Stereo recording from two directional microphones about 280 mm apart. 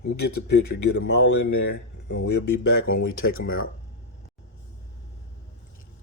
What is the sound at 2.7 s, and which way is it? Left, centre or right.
Speech, left.